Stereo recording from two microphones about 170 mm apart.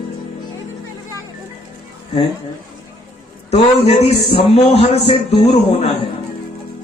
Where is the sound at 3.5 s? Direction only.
35° left (ahead or behind).